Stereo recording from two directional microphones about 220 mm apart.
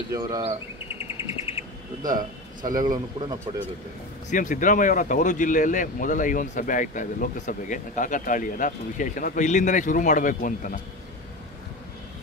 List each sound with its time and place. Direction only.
0.1 s a man's voice: 15° right (ahead or behind)
0.9 s insect: 25° left (ahead or behind)
2.0 s a man's voice: 20° right (ahead or behind)
4.3 s speech: 35° left (ahead or behind)